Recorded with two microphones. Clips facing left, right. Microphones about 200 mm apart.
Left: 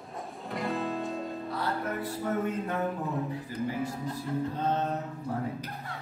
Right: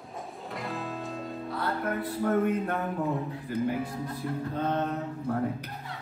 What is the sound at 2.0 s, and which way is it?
Music, 55° right (ahead or behind).